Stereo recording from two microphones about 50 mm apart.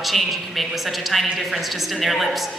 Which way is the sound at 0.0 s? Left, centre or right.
Centre.